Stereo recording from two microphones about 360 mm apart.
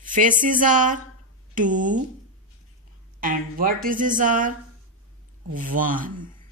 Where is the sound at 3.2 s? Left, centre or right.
Right.